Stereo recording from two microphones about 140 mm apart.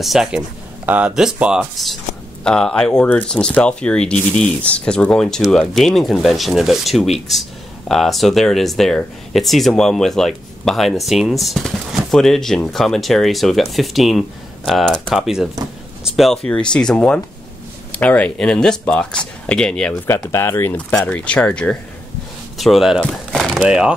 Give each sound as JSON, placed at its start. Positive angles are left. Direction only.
{"t": 0.0, "sound": "speech", "side_deg": 0}
{"t": 20.1, "sound": "speech", "side_deg": 20}